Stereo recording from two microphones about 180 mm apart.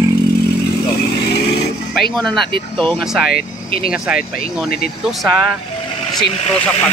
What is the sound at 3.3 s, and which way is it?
Speech, 60° left (ahead or behind).